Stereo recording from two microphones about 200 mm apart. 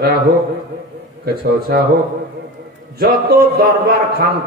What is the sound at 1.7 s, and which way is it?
Speech, 50° right (ahead or behind).